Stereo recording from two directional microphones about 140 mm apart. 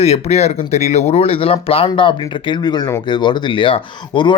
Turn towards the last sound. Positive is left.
turn(degrees=35)  # may be behind; listen again after turning